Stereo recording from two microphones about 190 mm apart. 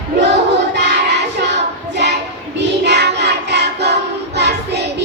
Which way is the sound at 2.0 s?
65° right (ahead or behind).